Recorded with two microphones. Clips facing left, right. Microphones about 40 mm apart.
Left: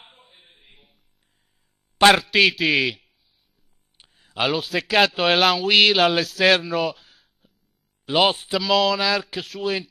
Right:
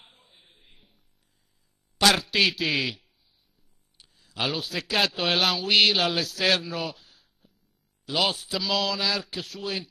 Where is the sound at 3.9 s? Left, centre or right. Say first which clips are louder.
Left 6 dB; left.